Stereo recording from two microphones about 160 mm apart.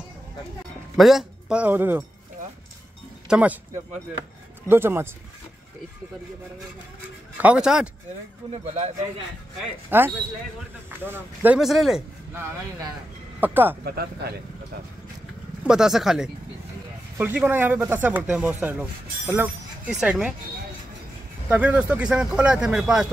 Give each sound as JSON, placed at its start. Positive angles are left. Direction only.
{"t": 0.9, "sound": "speech", "side_deg": 0}
{"t": 3.3, "sound": "speech", "side_deg": -5}
{"t": 4.6, "sound": "speech", "side_deg": -15}
{"t": 7.3, "sound": "speech", "side_deg": -5}
{"t": 8.5, "sound": "a man's voice", "side_deg": -45}
{"t": 9.8, "sound": "speech", "side_deg": -15}
{"t": 13.4, "sound": "speech", "side_deg": -10}
{"t": 13.8, "sound": "speech", "side_deg": -80}
{"t": 15.6, "sound": "speech", "side_deg": -5}
{"t": 21.5, "sound": "speech", "side_deg": -10}